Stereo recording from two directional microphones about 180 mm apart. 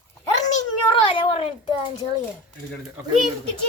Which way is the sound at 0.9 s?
30° left (ahead or behind).